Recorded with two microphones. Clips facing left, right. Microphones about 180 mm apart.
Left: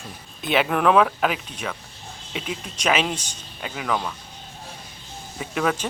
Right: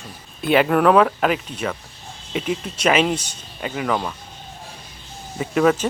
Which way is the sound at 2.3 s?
50° right (ahead or behind).